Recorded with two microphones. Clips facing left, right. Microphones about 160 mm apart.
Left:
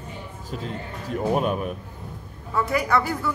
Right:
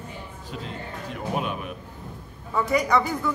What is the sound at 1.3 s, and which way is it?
Speech, 40° left (ahead or behind).